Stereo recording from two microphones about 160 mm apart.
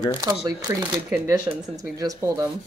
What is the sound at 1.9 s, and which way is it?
Speech, 20° right (ahead or behind).